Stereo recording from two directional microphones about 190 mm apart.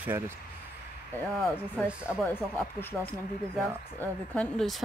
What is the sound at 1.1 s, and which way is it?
Speech, centre (ahead or behind).